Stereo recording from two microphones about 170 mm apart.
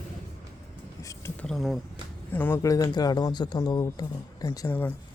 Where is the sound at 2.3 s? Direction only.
10° left (ahead or behind).